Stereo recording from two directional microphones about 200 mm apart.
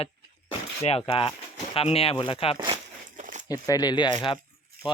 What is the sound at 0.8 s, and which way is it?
Speech, 30° left (ahead or behind).